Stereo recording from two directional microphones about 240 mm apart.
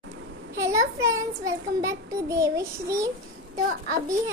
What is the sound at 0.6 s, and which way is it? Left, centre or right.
A woman's voice, centre.